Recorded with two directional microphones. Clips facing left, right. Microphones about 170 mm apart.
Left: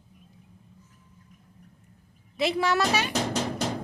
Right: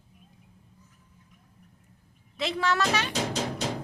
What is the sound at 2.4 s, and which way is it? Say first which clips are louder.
Speech: left 3 dB; 10° left (ahead or behind).